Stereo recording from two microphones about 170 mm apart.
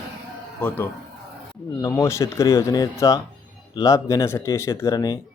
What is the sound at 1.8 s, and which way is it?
Speech, 15° left (ahead or behind).